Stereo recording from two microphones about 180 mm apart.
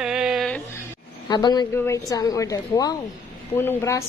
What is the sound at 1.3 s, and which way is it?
A woman's voice, 20° left (ahead or behind).